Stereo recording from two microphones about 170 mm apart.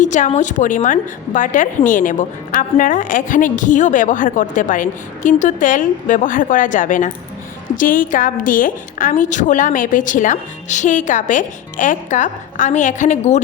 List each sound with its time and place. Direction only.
0.0 s a woman's voice: 45° left (ahead or behind)